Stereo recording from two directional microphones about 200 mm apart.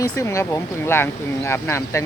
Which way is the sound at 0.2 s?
15° left (ahead or behind).